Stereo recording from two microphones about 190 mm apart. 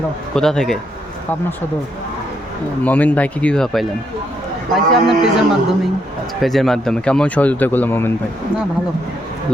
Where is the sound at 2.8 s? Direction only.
10° left (ahead or behind).